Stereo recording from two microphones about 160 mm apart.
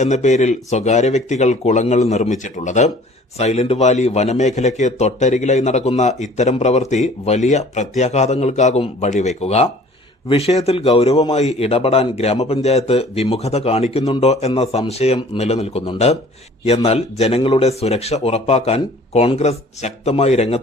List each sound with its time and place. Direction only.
0.0 s speech: 50° left (ahead or behind)